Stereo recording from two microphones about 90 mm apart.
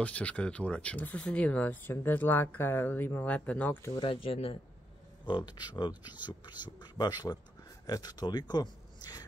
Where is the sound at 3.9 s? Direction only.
90° left.